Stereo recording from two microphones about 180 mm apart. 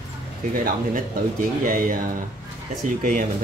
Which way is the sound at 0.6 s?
50° right (ahead or behind).